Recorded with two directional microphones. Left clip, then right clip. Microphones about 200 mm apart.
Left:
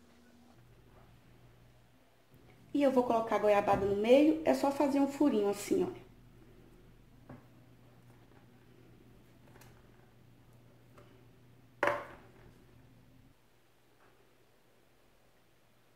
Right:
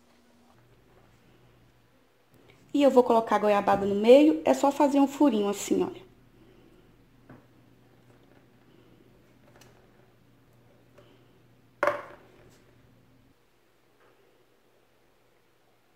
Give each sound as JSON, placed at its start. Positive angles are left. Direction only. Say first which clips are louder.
{"t": 2.7, "sound": "a woman's voice", "louder": "right 8 dB", "side_deg": -45}